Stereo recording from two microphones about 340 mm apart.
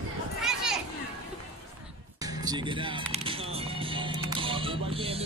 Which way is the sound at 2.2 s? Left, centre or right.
Centre.